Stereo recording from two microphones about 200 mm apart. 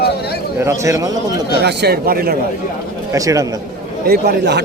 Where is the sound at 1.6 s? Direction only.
55° right (ahead or behind).